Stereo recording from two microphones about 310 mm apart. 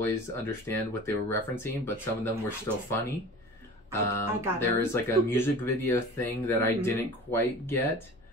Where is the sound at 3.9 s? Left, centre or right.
Centre.